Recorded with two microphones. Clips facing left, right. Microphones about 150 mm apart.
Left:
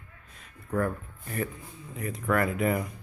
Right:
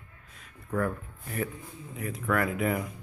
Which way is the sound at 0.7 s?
Centre (ahead or behind).